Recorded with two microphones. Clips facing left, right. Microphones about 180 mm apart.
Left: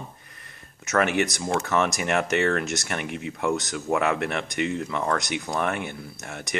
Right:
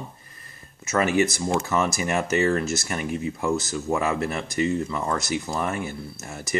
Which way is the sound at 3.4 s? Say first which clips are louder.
Left 1 dB; centre (ahead or behind).